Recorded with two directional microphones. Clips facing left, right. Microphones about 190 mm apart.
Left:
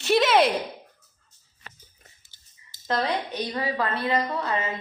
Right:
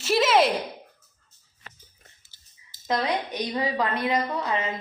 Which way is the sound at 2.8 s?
10° right (ahead or behind).